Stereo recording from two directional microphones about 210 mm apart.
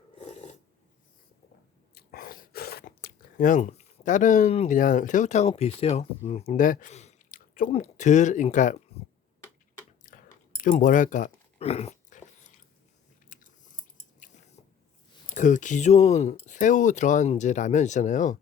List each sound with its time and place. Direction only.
0.2 s filing: 35° left (ahead or behind)
2.0 s speech: 45° left (ahead or behind)
8.9 s tick-tock: 30° left (ahead or behind)
10.0 s a sound: 40° left (ahead or behind)
10.6 s dog: 40° left (ahead or behind)
13.3 s chewing: 40° left (ahead or behind)
15.4 s speech: 35° left (ahead or behind)